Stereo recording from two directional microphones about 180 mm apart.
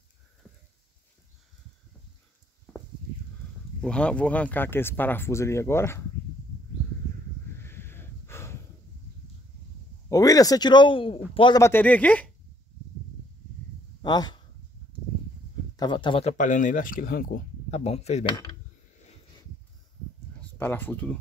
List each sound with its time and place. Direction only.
3.8 s speech: 5° left (ahead or behind)
7.4 s snort: 15° left (ahead or behind)
10.0 s speech: 20° left (ahead or behind)
11.6 s speech: 10° left (ahead or behind)
14.0 s speech: 25° left (ahead or behind)
15.7 s speech: 25° left (ahead or behind)
20.5 s speech: 10° left (ahead or behind)